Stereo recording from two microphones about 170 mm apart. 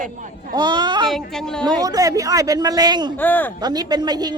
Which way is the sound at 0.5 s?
25° right (ahead or behind).